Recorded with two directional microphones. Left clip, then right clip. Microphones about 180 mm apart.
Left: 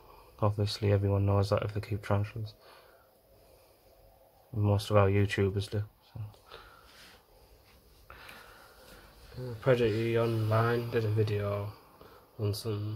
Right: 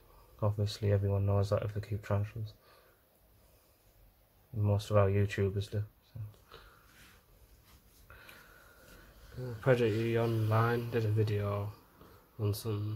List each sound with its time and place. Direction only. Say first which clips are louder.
0.4 s speech: left 5 dB; 20° left (ahead or behind)
4.6 s speech: left 3 dB; 20° left (ahead or behind)
8.1 s a sound: left 5 dB; 20° left (ahead or behind)
9.4 s speech: left 2 dB; 5° right (ahead or behind)